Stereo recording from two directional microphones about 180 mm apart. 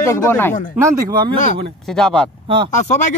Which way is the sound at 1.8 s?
Centre (ahead or behind).